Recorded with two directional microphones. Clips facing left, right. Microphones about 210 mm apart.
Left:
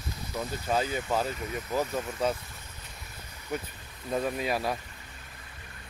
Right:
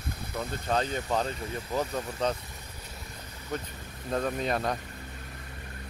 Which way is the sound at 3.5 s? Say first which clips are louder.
Left 1 dB; 10° left (ahead or behind).